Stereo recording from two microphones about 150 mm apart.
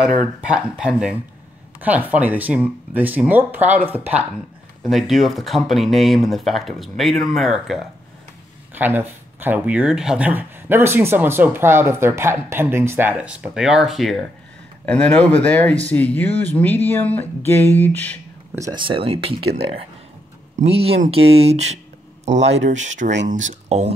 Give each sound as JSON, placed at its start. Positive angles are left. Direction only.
{"t": 0.2, "sound": "speech", "side_deg": -5}
{"t": 8.7, "sound": "speech", "side_deg": -15}
{"t": 18.5, "sound": "speech", "side_deg": -20}
{"t": 18.8, "sound": "speech", "side_deg": -35}
{"t": 20.5, "sound": "speech", "side_deg": -40}